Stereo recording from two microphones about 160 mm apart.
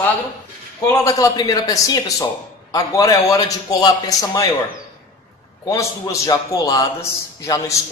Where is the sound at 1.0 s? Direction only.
20° left (ahead or behind).